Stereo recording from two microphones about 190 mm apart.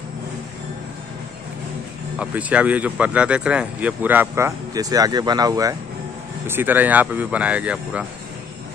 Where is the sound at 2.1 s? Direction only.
5° right (ahead or behind).